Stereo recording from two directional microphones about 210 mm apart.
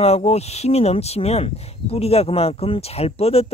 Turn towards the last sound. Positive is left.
turn(degrees=30)  # may be behind; listen again after turning